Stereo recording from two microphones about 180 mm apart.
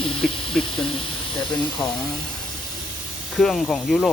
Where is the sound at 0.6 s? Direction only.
5° left (ahead or behind).